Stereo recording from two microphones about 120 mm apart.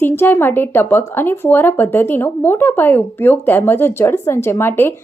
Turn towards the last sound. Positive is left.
turn(degrees=20)  # may be behind; listen again after turning